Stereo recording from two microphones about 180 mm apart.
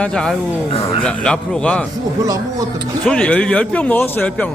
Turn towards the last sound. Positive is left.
turn(degrees=10)  # may be behind; listen again after turning